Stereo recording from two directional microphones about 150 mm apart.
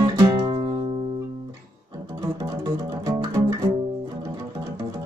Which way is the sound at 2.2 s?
25° right (ahead or behind).